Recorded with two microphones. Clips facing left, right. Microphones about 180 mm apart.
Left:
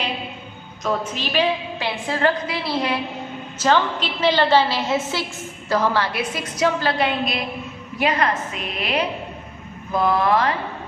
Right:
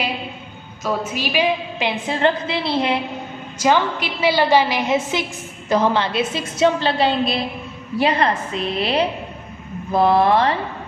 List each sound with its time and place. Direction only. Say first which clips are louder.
0.8 s a woman's voice: right 1 dB; 10° right (ahead or behind); by 3.0 s 25° right (ahead or behind)
3.5 s a woman's voice: right 1 dB; 10° right (ahead or behind); by 10.5 s 30° right (ahead or behind)